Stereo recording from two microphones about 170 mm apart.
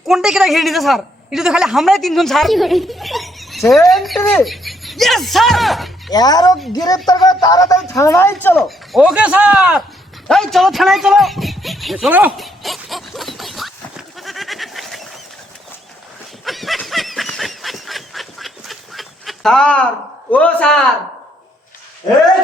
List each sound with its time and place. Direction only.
0.1 s a woman's voice: 5° right (ahead or behind)
6.1 s speech: 25° left (ahead or behind)
8.5 s speech: centre (ahead or behind)
12.4 s goat: centre (ahead or behind)
16.4 s a sound: centre (ahead or behind)
20.3 s speech: 5° left (ahead or behind)